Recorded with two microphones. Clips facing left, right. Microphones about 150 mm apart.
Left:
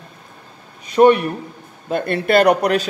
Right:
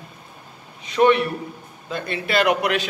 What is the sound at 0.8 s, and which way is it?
A man's voice, 45° left (ahead or behind).